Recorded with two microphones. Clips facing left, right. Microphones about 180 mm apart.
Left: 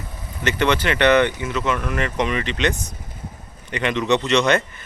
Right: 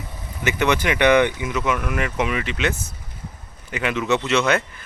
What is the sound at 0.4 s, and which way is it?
Speech, 10° right (ahead or behind).